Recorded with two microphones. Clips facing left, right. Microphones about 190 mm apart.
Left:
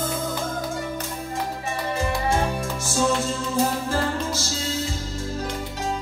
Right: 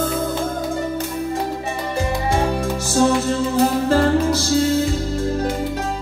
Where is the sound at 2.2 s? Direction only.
65° right (ahead or behind).